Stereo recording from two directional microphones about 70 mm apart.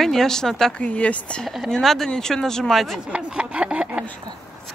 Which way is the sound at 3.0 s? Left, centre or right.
Centre.